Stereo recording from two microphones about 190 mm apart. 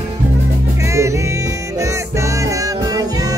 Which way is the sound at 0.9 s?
15° right (ahead or behind).